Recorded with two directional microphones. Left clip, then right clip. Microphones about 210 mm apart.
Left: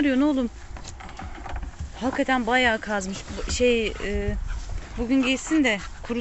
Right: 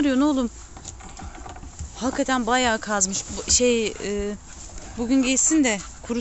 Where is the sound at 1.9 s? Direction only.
15° right (ahead or behind).